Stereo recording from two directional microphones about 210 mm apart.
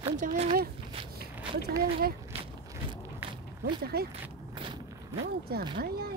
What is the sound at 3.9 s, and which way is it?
Speech, 50° right (ahead or behind).